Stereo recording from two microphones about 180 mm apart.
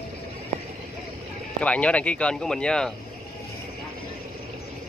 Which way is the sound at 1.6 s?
5° left (ahead or behind).